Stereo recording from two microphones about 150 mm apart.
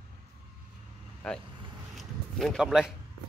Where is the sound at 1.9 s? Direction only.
Centre (ahead or behind).